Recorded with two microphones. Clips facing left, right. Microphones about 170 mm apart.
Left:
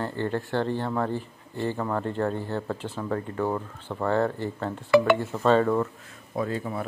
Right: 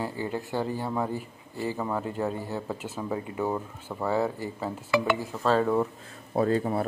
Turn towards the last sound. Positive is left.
turn(degrees=-35)  # may be behind; listen again after turning